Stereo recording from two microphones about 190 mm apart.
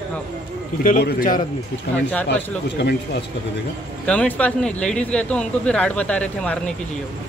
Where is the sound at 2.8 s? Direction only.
60° left (ahead or behind).